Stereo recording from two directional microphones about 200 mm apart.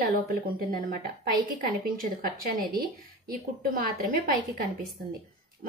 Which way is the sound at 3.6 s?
50° right (ahead or behind).